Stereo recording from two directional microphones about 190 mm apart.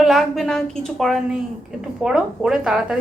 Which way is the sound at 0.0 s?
Centre (ahead or behind).